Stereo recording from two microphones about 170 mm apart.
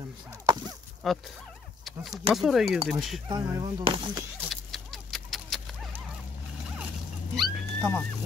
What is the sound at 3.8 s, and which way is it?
Speech, 30° right (ahead or behind).